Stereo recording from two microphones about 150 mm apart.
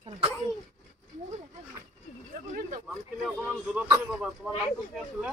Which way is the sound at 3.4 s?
5° right (ahead or behind).